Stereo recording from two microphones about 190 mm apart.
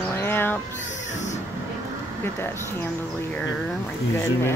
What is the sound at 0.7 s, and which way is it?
Speech, 40° left (ahead or behind).